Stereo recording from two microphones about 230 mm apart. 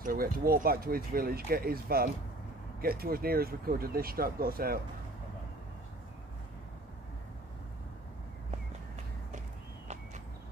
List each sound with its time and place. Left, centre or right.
0.0 s speech: right